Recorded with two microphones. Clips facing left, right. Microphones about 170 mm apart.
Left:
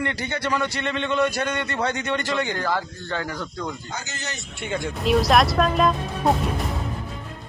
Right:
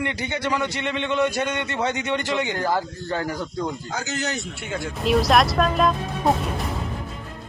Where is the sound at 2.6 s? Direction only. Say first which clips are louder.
Right 2 dB; 40° right (ahead or behind).